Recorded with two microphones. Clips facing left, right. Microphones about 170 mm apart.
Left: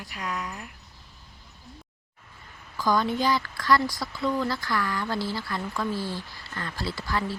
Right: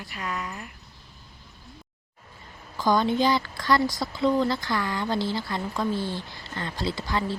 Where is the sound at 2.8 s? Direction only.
25° right (ahead or behind).